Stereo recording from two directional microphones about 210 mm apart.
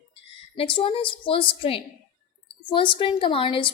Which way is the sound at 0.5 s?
25° left (ahead or behind).